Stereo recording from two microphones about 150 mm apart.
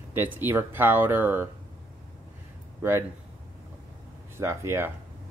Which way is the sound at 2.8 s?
15° right (ahead or behind).